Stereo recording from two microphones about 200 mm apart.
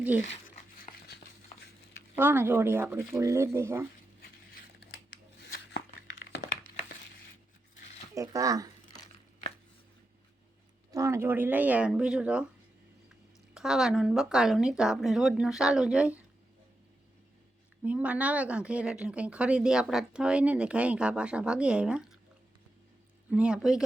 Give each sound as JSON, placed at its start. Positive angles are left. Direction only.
{"t": 1.0, "sound": "stir", "side_deg": 55}
{"t": 2.1, "sound": "speech", "side_deg": -10}
{"t": 4.9, "sound": "scissors", "side_deg": 55}
{"t": 8.1, "sound": "speech", "side_deg": -15}
{"t": 10.9, "sound": "speech", "side_deg": -15}
{"t": 13.5, "sound": "speech", "side_deg": -5}
{"t": 17.8, "sound": "speech", "side_deg": -5}
{"t": 23.3, "sound": "speech", "side_deg": -5}